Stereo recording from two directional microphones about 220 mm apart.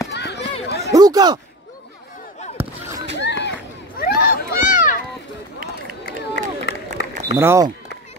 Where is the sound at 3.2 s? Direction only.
50° left (ahead or behind).